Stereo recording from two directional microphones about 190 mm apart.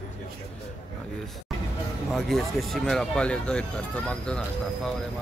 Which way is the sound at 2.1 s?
Centre (ahead or behind).